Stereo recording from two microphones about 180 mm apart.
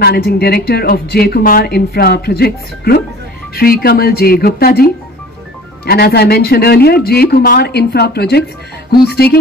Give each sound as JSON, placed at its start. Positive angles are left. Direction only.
{"t": 0.0, "sound": "speech", "side_deg": 60}